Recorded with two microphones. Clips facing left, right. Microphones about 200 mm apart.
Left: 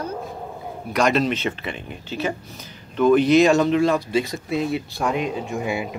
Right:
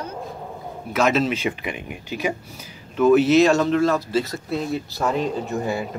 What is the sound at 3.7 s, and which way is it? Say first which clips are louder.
Speech: left 1 dB; 15° left (ahead or behind).